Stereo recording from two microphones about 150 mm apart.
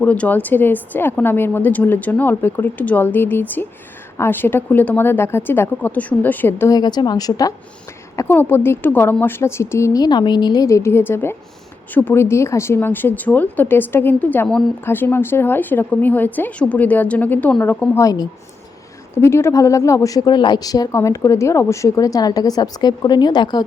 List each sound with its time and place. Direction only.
0.0 s speech: 10° left (ahead or behind)
6.7 s speech: 25° left (ahead or behind)